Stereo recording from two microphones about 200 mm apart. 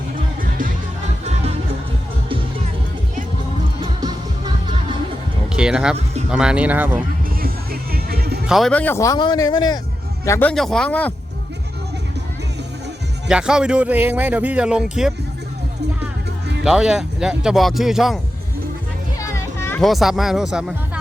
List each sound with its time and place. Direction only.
4.0 s music: 20° right (ahead or behind)
5.5 s speech: 5° right (ahead or behind)
7.3 s music: 45° right (ahead or behind)
8.4 s a man's voice: centre (ahead or behind)
10.5 s speech: centre (ahead or behind)
13.2 s speech: 5° right (ahead or behind)
16.6 s speech: 5° right (ahead or behind)
19.2 s music: 15° left (ahead or behind); by 21.0 s 5° right (ahead or behind)